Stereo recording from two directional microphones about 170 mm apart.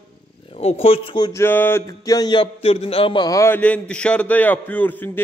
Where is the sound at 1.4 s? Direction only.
15° left (ahead or behind).